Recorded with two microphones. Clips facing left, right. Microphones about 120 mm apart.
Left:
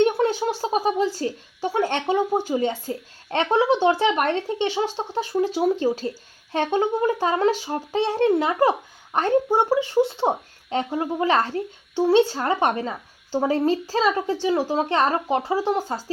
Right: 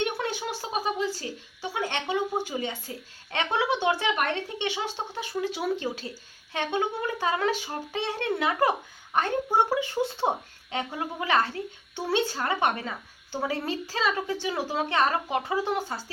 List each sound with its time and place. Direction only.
0.0 s a woman's voice: 40° left (ahead or behind)